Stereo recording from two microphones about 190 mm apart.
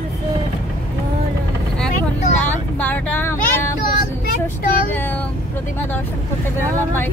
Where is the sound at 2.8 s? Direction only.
10° left (ahead or behind).